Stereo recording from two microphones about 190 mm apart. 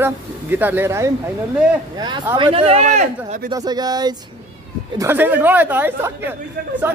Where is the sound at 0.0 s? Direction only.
10° right (ahead or behind); by 3.4 s 40° right (ahead or behind).